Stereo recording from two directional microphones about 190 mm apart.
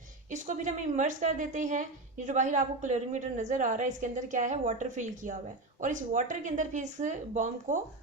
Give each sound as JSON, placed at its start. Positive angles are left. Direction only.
{"t": 0.3, "sound": "a woman's voice", "side_deg": -40}